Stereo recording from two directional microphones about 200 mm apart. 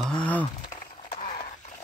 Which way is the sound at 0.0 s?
5° left (ahead or behind).